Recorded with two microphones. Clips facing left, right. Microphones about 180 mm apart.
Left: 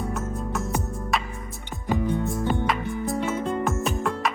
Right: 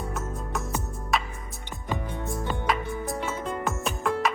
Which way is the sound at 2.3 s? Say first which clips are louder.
Left 3 dB; centre (ahead or behind).